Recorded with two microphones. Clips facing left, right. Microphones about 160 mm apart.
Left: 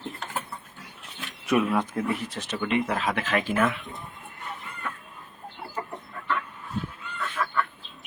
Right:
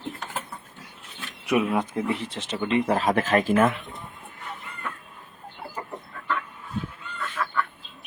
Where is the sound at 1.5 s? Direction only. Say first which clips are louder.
Even; 15° right (ahead or behind).